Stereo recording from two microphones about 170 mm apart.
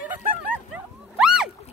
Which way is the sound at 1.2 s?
5° right (ahead or behind).